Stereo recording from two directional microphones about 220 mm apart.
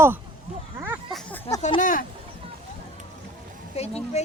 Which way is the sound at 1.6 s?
35° left (ahead or behind).